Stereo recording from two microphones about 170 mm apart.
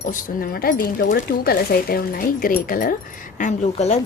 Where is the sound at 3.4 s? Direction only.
45° left (ahead or behind).